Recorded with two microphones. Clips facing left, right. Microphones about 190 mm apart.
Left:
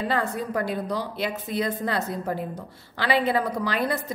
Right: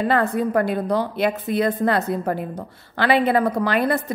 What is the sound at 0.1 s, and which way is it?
A woman's voice, 60° right (ahead or behind).